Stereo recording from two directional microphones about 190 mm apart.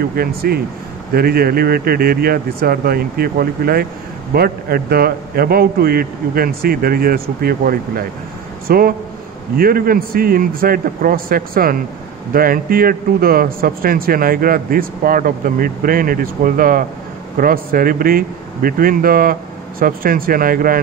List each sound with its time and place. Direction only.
0.5 s a man's voice: 55° right (ahead or behind)